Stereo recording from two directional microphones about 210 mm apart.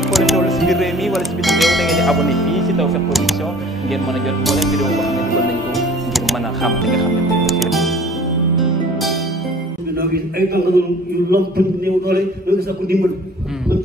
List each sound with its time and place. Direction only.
0.1 s speech: centre (ahead or behind)
4.5 s speech: centre (ahead or behind)
5.8 s music: centre (ahead or behind)
9.9 s a man's voice: 50° right (ahead or behind)